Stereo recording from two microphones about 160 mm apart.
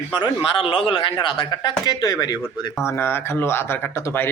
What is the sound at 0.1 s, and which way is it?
A man's voice, 30° left (ahead or behind).